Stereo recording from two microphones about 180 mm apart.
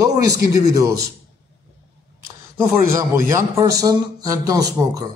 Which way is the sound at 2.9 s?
15° right (ahead or behind).